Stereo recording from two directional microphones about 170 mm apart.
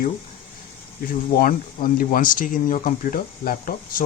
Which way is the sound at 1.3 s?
55° left (ahead or behind).